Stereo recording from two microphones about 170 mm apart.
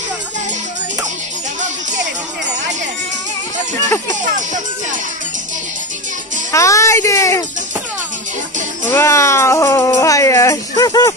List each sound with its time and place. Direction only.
6.5 s speech: 20° left (ahead or behind)
8.9 s speech: 15° left (ahead or behind)